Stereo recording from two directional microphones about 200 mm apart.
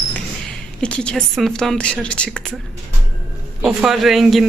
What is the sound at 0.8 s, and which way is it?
Speech, 5° left (ahead or behind).